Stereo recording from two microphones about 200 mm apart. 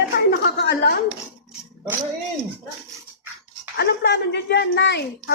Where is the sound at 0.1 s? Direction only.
55° left (ahead or behind).